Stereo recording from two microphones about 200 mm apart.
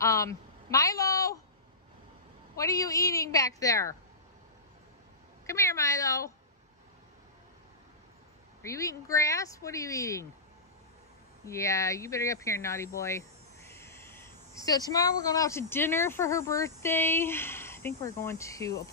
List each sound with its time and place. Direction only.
0.0 s a man's voice: 15° left (ahead or behind)
2.5 s speech: 15° left (ahead or behind)
5.5 s speech: 15° left (ahead or behind)
8.6 s speech: 15° left (ahead or behind)
11.4 s speech: 15° left (ahead or behind)
13.7 s a sound: 10° left (ahead or behind)
14.9 s speech: 20° left (ahead or behind)